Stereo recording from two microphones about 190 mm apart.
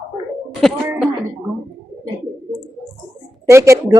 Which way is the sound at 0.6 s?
Centre (ahead or behind).